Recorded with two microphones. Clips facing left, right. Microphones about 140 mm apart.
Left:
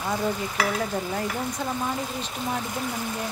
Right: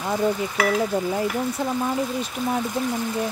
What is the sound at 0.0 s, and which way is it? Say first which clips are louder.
Frying: right 4 dB; 10° right (ahead or behind).